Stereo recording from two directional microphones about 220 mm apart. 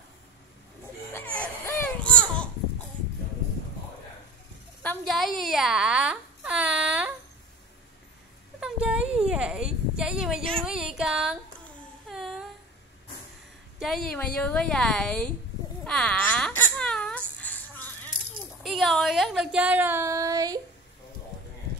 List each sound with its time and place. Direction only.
1.1 s baby cry: 5° left (ahead or behind)
4.8 s a sound: centre (ahead or behind)
8.5 s a sound: 5° right (ahead or behind)
13.7 s speech: centre (ahead or behind)
15.8 s whimper: 5° left (ahead or behind)
18.6 s speech: centre (ahead or behind); by 20.6 s 15° right (ahead or behind)